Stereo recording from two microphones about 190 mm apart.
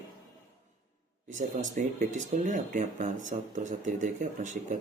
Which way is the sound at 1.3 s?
40° right (ahead or behind).